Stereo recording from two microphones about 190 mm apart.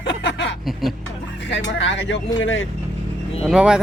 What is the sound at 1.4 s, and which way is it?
Speech, 70° left (ahead or behind).